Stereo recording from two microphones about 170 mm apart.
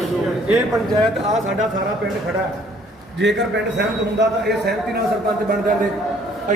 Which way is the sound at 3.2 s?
90° right.